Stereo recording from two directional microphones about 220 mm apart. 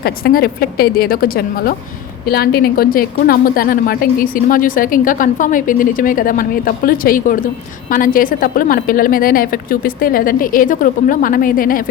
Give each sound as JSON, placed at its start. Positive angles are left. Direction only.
{"t": 0.0, "sound": "a woman's voice", "side_deg": 45}